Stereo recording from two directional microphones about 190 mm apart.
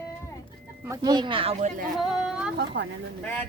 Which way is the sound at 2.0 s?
Centre (ahead or behind).